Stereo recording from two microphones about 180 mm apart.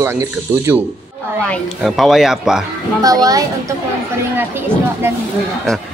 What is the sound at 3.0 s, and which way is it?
A woman's voice, 20° right (ahead or behind).